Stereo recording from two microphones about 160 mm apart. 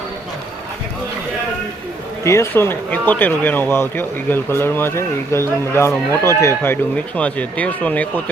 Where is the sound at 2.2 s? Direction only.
15° left (ahead or behind).